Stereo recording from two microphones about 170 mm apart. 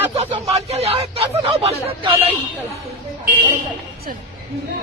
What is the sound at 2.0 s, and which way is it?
Speech, 30° right (ahead or behind).